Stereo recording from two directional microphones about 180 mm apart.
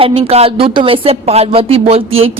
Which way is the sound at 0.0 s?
30° right (ahead or behind).